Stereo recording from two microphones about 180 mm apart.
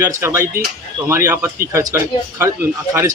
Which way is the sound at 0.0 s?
15° right (ahead or behind).